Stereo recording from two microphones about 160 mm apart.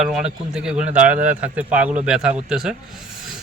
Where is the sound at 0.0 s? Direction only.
Centre (ahead or behind).